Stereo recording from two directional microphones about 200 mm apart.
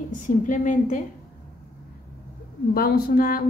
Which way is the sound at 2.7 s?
50° left (ahead or behind).